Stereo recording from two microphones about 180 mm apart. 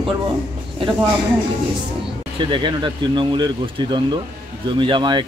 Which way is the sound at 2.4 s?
25° right (ahead or behind).